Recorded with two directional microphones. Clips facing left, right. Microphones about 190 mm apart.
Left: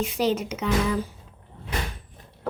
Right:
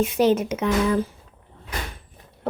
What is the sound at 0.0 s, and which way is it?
Speech, 55° right (ahead or behind).